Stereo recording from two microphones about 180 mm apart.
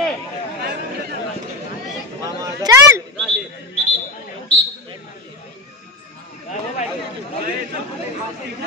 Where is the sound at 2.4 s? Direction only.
15° right (ahead or behind).